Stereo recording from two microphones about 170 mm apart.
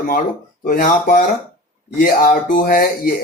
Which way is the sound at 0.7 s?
60° left (ahead or behind).